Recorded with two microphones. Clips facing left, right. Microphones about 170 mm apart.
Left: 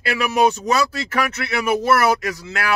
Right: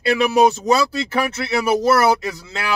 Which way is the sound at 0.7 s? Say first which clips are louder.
Right 3 dB; 30° right (ahead or behind).